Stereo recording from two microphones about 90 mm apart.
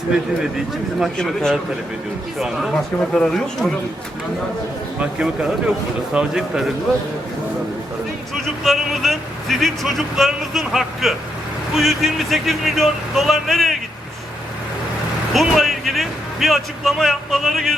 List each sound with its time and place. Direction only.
0.5 s a man's voice: 5° right (ahead or behind)
1.1 s a man's voice: 5° left (ahead or behind)
4.9 s speech: 10° right (ahead or behind)
8.6 s a man's voice: centre (ahead or behind)
15.3 s a man's voice: centre (ahead or behind)